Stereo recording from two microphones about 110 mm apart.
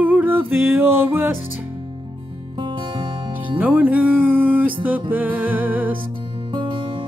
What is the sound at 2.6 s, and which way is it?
Music, 50° right (ahead or behind).